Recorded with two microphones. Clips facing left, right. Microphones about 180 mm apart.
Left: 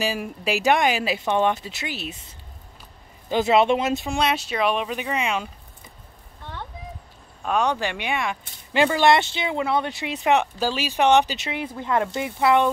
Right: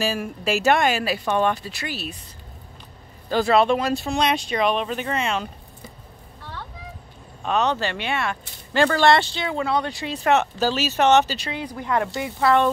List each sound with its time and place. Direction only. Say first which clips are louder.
0.0 s speech: right 1 dB; 15° left (ahead or behind)
4.2 s speech: right 2 dB; 5° left (ahead or behind)
7.4 s speech: right 1 dB; 10° left (ahead or behind)